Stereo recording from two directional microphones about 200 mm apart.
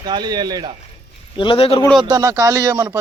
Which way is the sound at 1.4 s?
25° left (ahead or behind).